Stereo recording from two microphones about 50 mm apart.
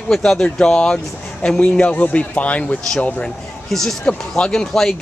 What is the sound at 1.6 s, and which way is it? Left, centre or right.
Speech, left.